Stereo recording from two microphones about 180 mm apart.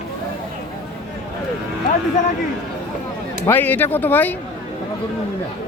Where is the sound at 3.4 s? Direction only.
10° left (ahead or behind).